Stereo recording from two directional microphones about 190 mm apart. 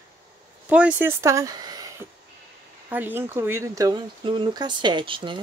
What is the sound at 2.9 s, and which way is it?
Speech, 10° right (ahead or behind).